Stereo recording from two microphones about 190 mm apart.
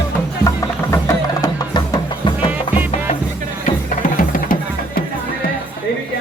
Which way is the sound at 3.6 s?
45° left (ahead or behind).